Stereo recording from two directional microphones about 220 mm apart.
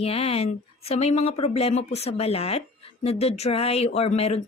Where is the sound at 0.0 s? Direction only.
25° left (ahead or behind).